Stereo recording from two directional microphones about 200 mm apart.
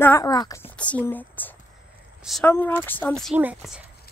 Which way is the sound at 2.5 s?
10° left (ahead or behind).